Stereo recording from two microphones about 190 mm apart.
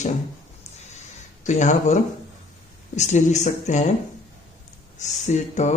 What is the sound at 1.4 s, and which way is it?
Speech, 40° left (ahead or behind).